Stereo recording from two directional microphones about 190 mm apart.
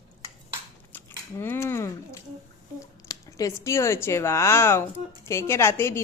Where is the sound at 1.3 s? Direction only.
10° left (ahead or behind).